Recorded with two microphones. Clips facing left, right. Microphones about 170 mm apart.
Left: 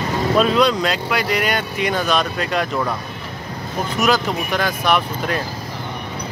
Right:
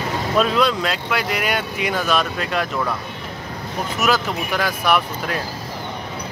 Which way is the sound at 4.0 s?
5° right (ahead or behind).